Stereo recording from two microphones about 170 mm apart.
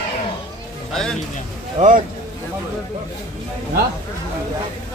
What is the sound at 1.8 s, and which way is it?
Speech, 45° right (ahead or behind).